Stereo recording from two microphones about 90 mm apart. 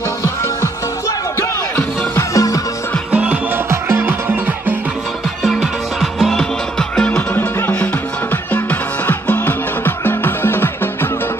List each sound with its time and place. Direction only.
1.8 s music: 30° left (ahead or behind)
3.1 s music: 15° right (ahead or behind)
3.7 s music: 30° right (ahead or behind)
5.4 s music: centre (ahead or behind)
7.1 s music: 20° left (ahead or behind)